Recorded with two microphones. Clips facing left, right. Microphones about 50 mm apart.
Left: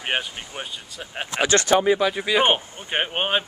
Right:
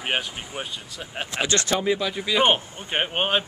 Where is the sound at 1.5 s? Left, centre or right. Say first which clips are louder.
Left 6 dB; left.